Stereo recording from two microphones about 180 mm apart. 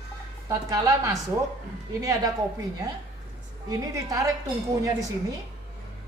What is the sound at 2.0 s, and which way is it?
Speech, 20° right (ahead or behind).